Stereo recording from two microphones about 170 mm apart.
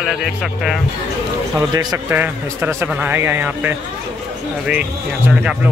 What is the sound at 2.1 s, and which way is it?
A man's voice, 10° right (ahead or behind).